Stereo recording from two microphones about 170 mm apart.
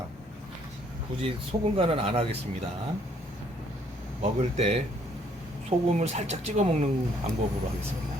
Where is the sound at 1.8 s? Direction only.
35° right (ahead or behind).